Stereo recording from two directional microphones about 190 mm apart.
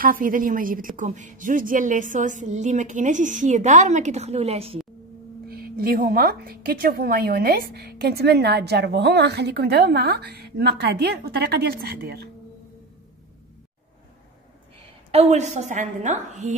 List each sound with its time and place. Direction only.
0.0 s a woman's voice: 45° right (ahead or behind); by 4.7 s 30° right (ahead or behind)
5.5 s speech: 50° right (ahead or behind)
15.0 s a woman's voice: 35° right (ahead or behind)